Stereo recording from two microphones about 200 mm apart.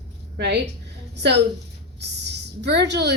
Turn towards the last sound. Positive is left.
turn(degrees=-60)  # may be behind; listen again after turning